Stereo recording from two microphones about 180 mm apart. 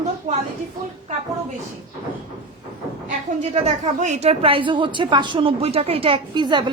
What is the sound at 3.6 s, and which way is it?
A woman's voice, 40° right (ahead or behind).